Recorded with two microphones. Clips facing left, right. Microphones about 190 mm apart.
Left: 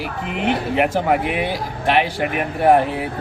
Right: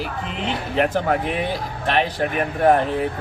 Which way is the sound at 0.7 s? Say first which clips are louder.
Even; 15° left (ahead or behind).